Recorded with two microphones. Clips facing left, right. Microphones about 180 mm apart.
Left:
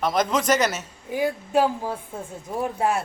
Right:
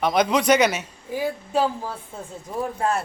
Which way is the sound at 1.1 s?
10° left (ahead or behind).